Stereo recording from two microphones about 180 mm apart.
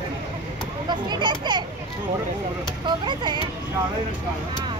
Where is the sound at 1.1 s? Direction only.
25° right (ahead or behind).